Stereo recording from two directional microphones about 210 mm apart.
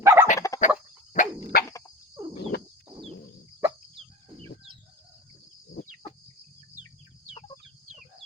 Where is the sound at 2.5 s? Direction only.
50° left (ahead or behind).